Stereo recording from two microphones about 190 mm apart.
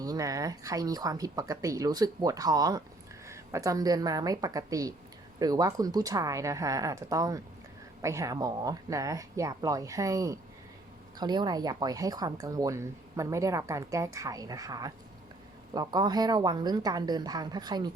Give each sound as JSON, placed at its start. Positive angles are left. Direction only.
{"t": 0.0, "sound": "speech", "side_deg": -20}